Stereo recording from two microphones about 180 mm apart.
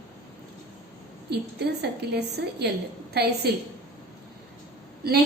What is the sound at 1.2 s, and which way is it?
A woman's voice, 65° right (ahead or behind).